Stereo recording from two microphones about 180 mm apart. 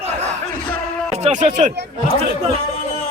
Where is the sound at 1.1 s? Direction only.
40° right (ahead or behind).